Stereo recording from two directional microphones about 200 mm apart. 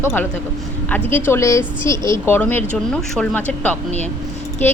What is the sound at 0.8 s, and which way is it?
A woman's voice, 10° left (ahead or behind).